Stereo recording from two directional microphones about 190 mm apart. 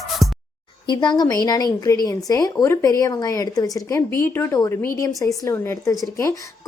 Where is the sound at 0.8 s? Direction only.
25° left (ahead or behind).